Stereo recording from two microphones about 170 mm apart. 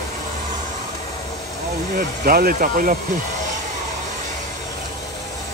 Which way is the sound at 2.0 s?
60° right (ahead or behind).